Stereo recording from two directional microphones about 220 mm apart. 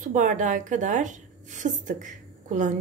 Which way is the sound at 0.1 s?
35° right (ahead or behind).